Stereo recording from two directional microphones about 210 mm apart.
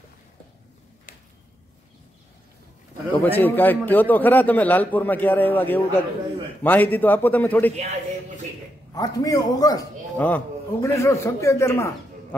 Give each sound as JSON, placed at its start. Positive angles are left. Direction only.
{"t": 3.1, "sound": "a man's voice", "side_deg": 10}
{"t": 7.7, "sound": "a man's voice", "side_deg": -30}
{"t": 8.9, "sound": "a man's voice", "side_deg": 15}